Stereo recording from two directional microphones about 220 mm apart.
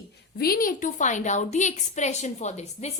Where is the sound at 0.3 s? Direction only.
40° left (ahead or behind).